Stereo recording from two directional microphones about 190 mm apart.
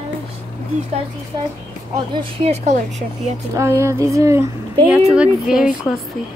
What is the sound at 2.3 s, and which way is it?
Speech, 35° right (ahead or behind).